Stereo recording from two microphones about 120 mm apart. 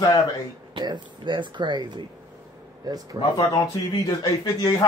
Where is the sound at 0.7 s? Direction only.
40° right (ahead or behind).